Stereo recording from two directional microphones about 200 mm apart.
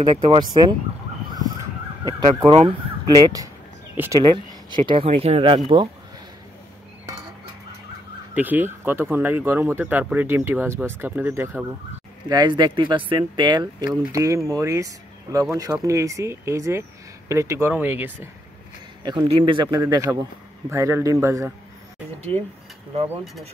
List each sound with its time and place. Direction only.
0.0 s speech: 20° right (ahead or behind)
2.1 s speech: 25° right (ahead or behind)
3.9 s speech: 10° right (ahead or behind)
4.2 s speech: 25° right (ahead or behind)
8.4 s speech: 10° right (ahead or behind)
12.3 s speech: 20° right (ahead or behind)
19.0 s speech: 25° right (ahead or behind)
23.0 s speech: centre (ahead or behind)